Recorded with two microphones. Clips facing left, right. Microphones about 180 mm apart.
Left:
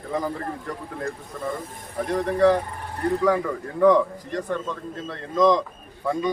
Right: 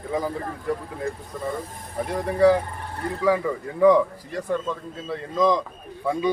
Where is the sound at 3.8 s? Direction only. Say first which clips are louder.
Right 1 dB; 10° right (ahead or behind).